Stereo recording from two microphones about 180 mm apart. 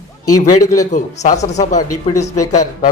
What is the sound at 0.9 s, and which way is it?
Speech, 40° left (ahead or behind).